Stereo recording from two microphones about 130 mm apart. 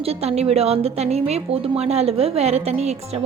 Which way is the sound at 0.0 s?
50° right (ahead or behind).